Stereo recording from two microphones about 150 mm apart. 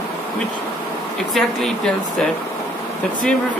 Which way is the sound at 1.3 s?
Centre (ahead or behind).